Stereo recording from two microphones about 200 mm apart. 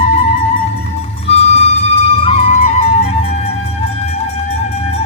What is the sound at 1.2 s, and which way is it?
Vehicle, 30° left (ahead or behind).